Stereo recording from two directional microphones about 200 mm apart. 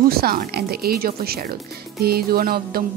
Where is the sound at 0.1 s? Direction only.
50° right (ahead or behind).